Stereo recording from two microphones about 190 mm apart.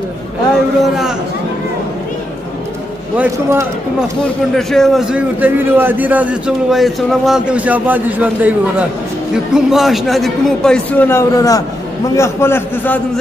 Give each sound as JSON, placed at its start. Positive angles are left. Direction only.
{"t": 3.2, "sound": "a man's voice", "side_deg": -15}
{"t": 4.6, "sound": "a man's voice", "side_deg": 0}